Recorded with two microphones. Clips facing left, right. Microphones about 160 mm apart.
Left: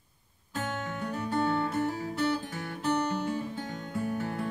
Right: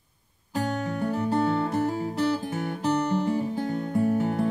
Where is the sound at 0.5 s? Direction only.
35° right (ahead or behind).